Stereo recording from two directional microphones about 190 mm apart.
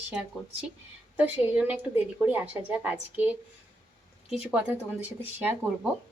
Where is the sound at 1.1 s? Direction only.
10° right (ahead or behind).